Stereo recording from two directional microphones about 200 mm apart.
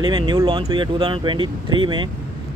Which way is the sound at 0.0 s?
20° right (ahead or behind).